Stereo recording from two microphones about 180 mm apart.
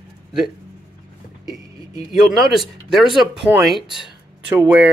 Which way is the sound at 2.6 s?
Centre (ahead or behind).